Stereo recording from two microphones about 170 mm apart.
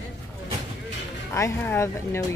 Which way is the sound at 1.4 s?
15° left (ahead or behind).